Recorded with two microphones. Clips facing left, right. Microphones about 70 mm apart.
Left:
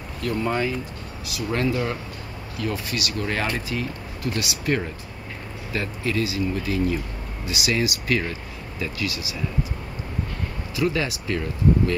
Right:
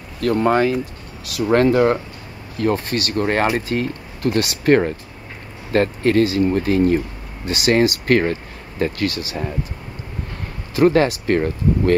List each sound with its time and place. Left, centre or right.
0.2 s speech: right
10.8 s speech: right